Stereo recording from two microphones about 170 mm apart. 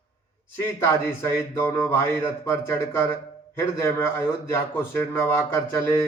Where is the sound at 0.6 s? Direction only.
15° left (ahead or behind).